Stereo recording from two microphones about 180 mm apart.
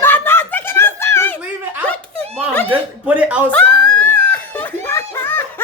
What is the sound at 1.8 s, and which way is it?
Giggle, 5° left (ahead or behind).